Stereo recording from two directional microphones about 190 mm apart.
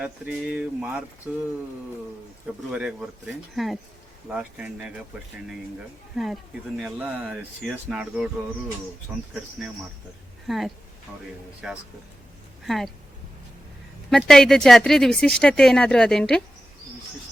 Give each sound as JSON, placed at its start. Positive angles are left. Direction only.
{"t": 0.0, "sound": "speech", "side_deg": -5}
{"t": 2.7, "sound": "speech", "side_deg": -5}
{"t": 6.1, "sound": "speech", "side_deg": 0}
{"t": 9.3, "sound": "speech", "side_deg": -5}
{"t": 14.1, "sound": "speech", "side_deg": 0}